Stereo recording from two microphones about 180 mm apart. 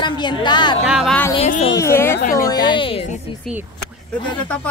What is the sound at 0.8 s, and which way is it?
Speech, 5° right (ahead or behind).